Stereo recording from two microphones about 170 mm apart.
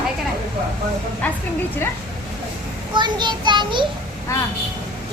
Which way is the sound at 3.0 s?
25° right (ahead or behind).